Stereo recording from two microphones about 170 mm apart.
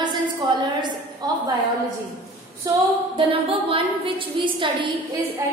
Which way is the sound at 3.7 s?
30° right (ahead or behind).